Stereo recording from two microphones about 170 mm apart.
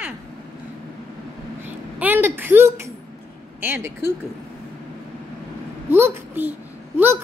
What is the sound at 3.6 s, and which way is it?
Speech, 15° right (ahead or behind).